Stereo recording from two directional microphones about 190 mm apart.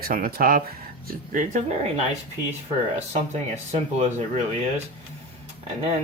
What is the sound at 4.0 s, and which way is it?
Speech, 35° right (ahead or behind).